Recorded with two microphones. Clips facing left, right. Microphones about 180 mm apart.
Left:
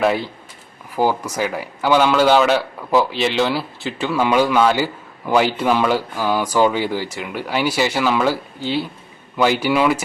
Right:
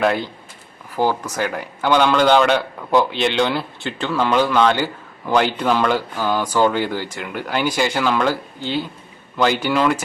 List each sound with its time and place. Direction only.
0.0 s a man's voice: centre (ahead or behind)